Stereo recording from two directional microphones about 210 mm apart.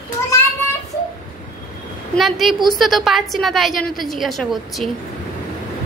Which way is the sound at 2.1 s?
Centre (ahead or behind).